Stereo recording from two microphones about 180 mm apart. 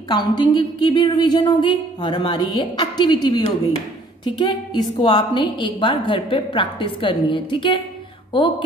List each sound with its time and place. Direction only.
0.1 s a woman's voice: 25° left (ahead or behind)